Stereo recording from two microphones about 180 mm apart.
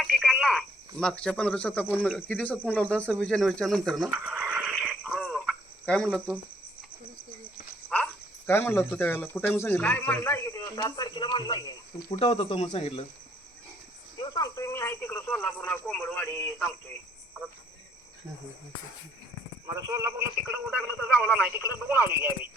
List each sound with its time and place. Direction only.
0.0 s speech: centre (ahead or behind)
4.7 s a sound: centre (ahead or behind)
7.9 s speech: 5° left (ahead or behind); by 13.1 s 35° left (ahead or behind)
14.2 s cricket: 20° left (ahead or behind)
19.6 s speech: 15° right (ahead or behind)